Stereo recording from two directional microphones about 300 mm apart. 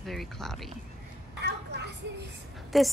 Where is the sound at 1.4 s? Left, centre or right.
Right.